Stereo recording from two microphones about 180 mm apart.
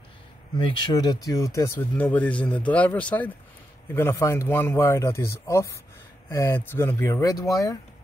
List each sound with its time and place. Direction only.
0.6 s speech: 25° left (ahead or behind)